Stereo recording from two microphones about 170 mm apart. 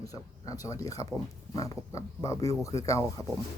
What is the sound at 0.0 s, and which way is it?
Speech, 20° left (ahead or behind).